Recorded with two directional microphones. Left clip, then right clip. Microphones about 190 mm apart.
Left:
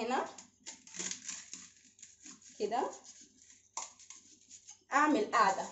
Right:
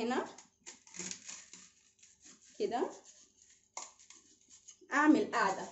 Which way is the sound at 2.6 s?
50° right (ahead or behind).